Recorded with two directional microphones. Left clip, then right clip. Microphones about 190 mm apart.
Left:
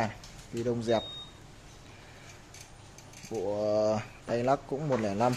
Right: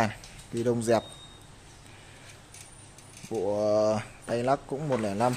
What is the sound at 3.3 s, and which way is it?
Speech, 30° right (ahead or behind).